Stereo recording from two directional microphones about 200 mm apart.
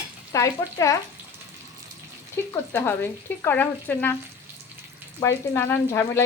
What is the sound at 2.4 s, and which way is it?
Speech, 10° left (ahead or behind).